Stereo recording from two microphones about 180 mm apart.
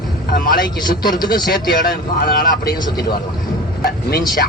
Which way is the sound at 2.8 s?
25° left (ahead or behind).